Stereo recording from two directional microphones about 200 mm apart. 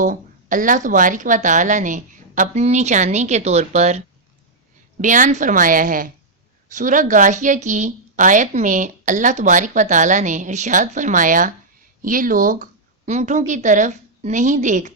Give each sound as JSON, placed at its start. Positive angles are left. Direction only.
{"t": 0.0, "sound": "speech", "side_deg": -40}